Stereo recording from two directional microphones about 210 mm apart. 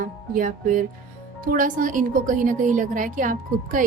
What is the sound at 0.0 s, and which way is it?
A woman's voice, 40° right (ahead or behind).